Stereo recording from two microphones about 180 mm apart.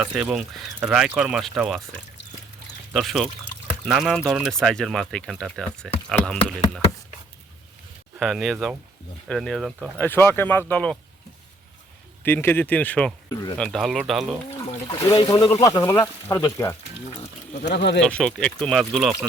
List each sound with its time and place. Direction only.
0.0 s speech: 5° right (ahead or behind)
2.9 s speech: centre (ahead or behind)
8.2 s speech: centre (ahead or behind)
10.1 s speech: 10° left (ahead or behind)
12.2 s speech: 10° left (ahead or behind)
13.3 s speech: 20° left (ahead or behind)
13.6 s speech: centre (ahead or behind)
14.9 s speech: 25° left (ahead or behind)
17.6 s speech: 65° left (ahead or behind)
18.0 s speech: 5° left (ahead or behind)